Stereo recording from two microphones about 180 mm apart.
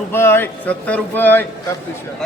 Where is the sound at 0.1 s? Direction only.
10° left (ahead or behind).